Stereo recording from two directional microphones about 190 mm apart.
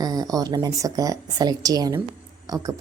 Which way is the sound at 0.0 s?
20° right (ahead or behind).